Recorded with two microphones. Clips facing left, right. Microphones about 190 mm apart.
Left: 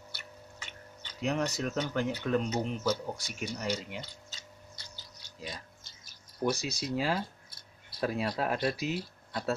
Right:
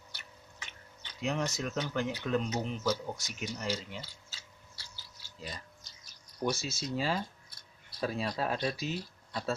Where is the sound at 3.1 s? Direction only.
10° left (ahead or behind).